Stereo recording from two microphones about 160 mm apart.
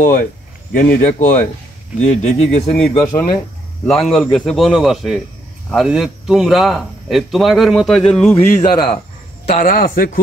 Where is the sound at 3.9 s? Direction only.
Centre (ahead or behind).